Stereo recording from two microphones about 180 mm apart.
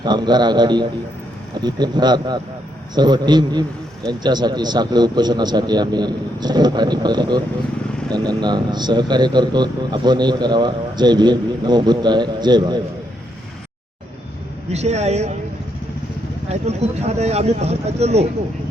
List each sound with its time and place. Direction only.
0.0 s a man's voice: 25° right (ahead or behind)
14.7 s speech: 40° right (ahead or behind)
16.5 s speech: 35° right (ahead or behind)